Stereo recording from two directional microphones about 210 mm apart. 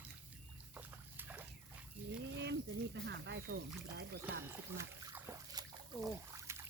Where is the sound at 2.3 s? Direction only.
55° right (ahead or behind).